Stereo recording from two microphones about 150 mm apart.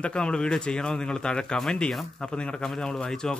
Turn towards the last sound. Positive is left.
turn(degrees=5)  # may be behind; listen again after turning